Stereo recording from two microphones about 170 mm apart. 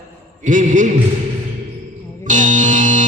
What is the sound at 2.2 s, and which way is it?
Music, 50° right (ahead or behind).